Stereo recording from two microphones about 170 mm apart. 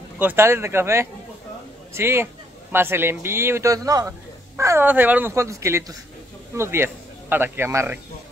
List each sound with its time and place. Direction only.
0.2 s speech: 10° right (ahead or behind)